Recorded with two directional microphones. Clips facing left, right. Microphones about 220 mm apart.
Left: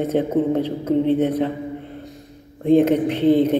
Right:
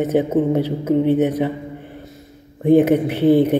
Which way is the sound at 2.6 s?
10° right (ahead or behind).